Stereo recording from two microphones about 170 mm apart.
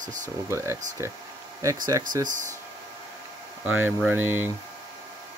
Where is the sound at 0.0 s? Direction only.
50° right (ahead or behind).